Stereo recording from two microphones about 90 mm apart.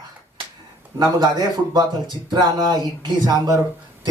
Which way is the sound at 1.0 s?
50° right (ahead or behind).